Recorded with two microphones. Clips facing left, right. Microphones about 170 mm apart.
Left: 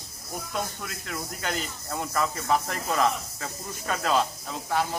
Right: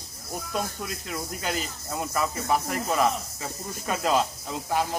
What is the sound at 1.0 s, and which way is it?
Speech, 20° right (ahead or behind).